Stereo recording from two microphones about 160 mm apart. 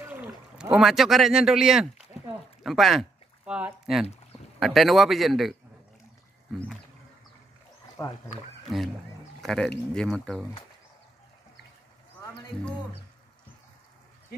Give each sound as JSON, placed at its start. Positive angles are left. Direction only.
{"t": 0.0, "sound": "a man's voice", "side_deg": -10}
{"t": 8.0, "sound": "speech", "side_deg": 15}
{"t": 8.6, "sound": "a man's voice", "side_deg": 0}